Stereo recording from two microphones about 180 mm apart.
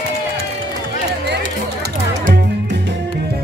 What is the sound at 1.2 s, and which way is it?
Music, 70° right (ahead or behind).